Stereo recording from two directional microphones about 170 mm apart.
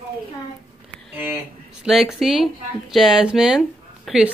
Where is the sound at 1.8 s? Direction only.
Centre (ahead or behind).